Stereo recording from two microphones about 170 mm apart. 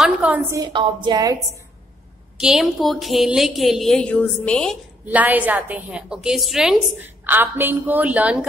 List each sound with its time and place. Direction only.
0.0 s a woman's voice: 10° right (ahead or behind)
0.6 s a woman's voice: 25° right (ahead or behind)
2.3 s a woman's voice: 5° right (ahead or behind)
5.0 s a woman's voice: 10° right (ahead or behind)